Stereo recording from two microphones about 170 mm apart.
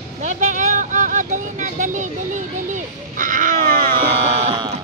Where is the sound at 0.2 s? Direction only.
45° right (ahead or behind).